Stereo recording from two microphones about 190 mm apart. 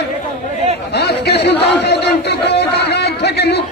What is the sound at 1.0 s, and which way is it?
A man's voice, 60° left (ahead or behind).